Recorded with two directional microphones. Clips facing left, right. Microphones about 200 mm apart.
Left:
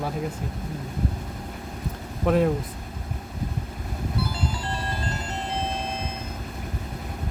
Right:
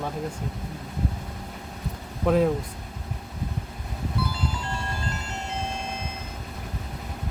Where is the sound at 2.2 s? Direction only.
Centre (ahead or behind).